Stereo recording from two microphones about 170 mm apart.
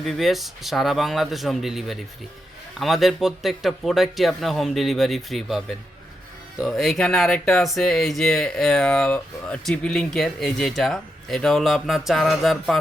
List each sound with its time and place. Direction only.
0.0 s speech: centre (ahead or behind)